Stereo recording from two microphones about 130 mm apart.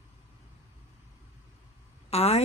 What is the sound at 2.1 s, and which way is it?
Speech, 55° left (ahead or behind).